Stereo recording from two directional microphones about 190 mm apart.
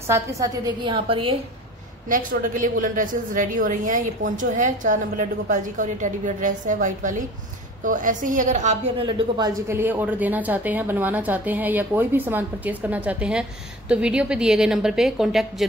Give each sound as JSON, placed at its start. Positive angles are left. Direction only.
{"t": 0.0, "sound": "a woman's voice", "side_deg": -15}
{"t": 2.0, "sound": "a woman's voice", "side_deg": -45}
{"t": 9.0, "sound": "speech", "side_deg": -15}